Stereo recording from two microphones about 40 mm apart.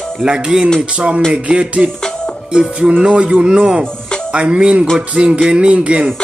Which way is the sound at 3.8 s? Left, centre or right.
Left.